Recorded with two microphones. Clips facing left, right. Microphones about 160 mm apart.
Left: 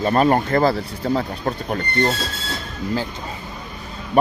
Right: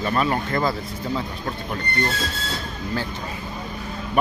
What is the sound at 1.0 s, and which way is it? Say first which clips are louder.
Speech: left 6 dB; 50° left (ahead or behind).